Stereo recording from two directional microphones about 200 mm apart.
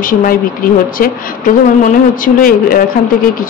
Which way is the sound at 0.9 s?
45° left (ahead or behind).